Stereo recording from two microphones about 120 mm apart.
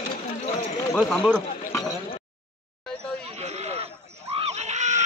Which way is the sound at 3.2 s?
65° right (ahead or behind).